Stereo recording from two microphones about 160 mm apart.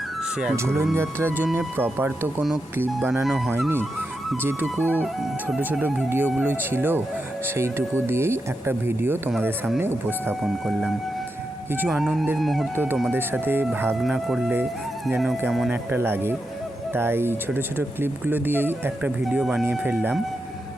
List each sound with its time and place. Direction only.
0.5 s speech: 15° right (ahead or behind)
3.2 s speech: centre (ahead or behind)
4.8 s speech: 10° right (ahead or behind)
10.4 s speech: centre (ahead or behind)
12.7 s speech: 15° right (ahead or behind)
14.0 s speech: centre (ahead or behind)
15.7 s speech: 15° right (ahead or behind)